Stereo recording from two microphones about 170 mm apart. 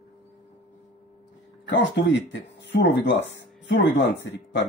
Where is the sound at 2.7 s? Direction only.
90° left.